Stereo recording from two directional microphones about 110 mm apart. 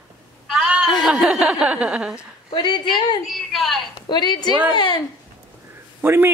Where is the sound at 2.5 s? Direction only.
45° left (ahead or behind).